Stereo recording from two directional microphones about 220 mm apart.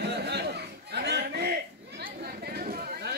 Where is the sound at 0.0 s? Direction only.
50° right (ahead or behind).